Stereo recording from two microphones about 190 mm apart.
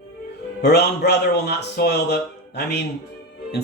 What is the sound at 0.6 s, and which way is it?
A man's voice, 60° left (ahead or behind).